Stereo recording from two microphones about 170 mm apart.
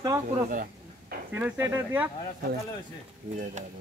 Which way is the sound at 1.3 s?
10° right (ahead or behind).